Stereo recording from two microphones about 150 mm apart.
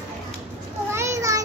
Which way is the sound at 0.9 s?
20° right (ahead or behind).